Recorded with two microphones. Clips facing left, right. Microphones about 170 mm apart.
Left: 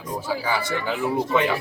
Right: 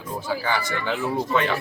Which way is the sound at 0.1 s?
5° left (ahead or behind).